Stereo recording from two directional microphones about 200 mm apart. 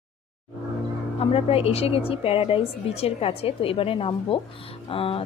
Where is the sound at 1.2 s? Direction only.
30° left (ahead or behind).